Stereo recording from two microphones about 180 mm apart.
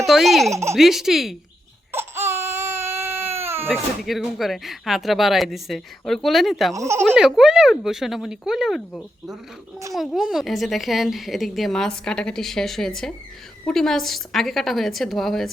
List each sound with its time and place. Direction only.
0.0 s speech: centre (ahead or behind)
0.5 s speech: 15° right (ahead or behind)
0.8 s speech: centre (ahead or behind)
1.9 s baby cry: 15° right (ahead or behind)
3.7 s speech: centre (ahead or behind)
6.7 s speech: 15° right (ahead or behind)
7.2 s speech: centre (ahead or behind)